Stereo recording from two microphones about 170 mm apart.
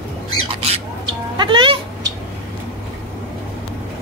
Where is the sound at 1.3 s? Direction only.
25° right (ahead or behind).